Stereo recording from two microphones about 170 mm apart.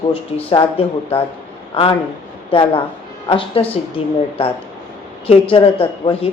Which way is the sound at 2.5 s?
30° left (ahead or behind).